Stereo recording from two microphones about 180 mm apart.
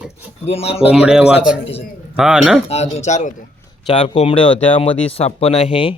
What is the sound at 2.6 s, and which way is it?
Speech, 35° left (ahead or behind).